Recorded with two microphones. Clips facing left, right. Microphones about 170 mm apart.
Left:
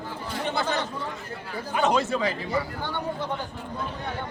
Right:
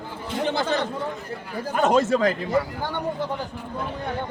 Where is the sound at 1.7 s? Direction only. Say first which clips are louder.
Right 4 dB; 45° right (ahead or behind).